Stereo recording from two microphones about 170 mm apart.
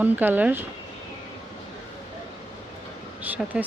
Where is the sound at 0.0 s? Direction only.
10° right (ahead or behind).